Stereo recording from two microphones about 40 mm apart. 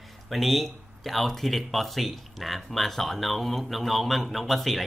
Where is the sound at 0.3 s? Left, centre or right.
Centre.